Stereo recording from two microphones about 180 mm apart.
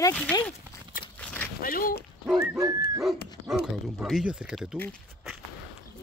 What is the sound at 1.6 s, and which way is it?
Speech, 55° left (ahead or behind).